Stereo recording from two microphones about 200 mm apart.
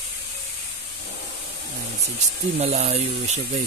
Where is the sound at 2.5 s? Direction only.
30° right (ahead or behind).